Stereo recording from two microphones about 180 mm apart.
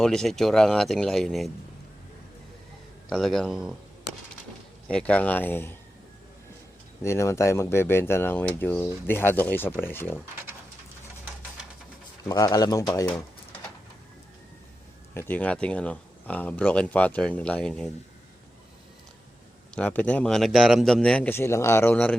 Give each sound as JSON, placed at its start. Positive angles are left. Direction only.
{"t": 0.0, "sound": "speech", "side_deg": 5}
{"t": 3.1, "sound": "speech", "side_deg": 0}
{"t": 4.9, "sound": "speech", "side_deg": 5}
{"t": 7.0, "sound": "speech", "side_deg": 15}
{"t": 12.3, "sound": "speech", "side_deg": 20}
{"t": 15.1, "sound": "speech", "side_deg": 10}
{"t": 19.7, "sound": "speech", "side_deg": 5}